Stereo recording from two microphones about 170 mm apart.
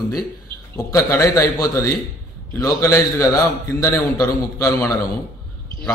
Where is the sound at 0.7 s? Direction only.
15° left (ahead or behind).